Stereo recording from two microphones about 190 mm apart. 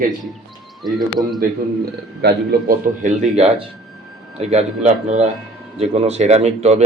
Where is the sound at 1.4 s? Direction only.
55° right (ahead or behind).